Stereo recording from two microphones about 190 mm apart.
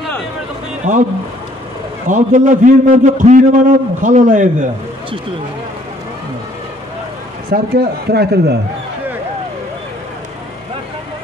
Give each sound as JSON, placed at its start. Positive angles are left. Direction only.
{"t": 0.8, "sound": "a man's voice", "side_deg": -40}
{"t": 2.0, "sound": "a man's voice", "side_deg": -40}
{"t": 7.5, "sound": "a man's voice", "side_deg": -55}